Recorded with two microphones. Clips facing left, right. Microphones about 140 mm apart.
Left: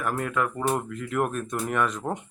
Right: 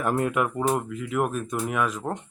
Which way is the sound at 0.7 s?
5° right (ahead or behind).